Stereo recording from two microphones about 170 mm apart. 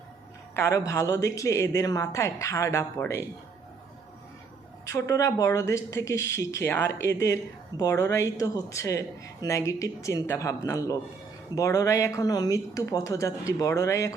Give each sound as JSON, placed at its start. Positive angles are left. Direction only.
{"t": 0.5, "sound": "speech", "side_deg": 15}
{"t": 4.9, "sound": "speech", "side_deg": 20}